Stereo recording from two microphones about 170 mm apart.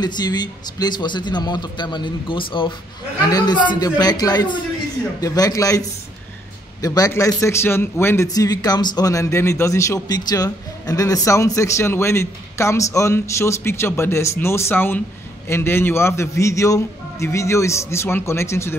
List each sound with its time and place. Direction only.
0.0 s a man's voice: 25° left (ahead or behind)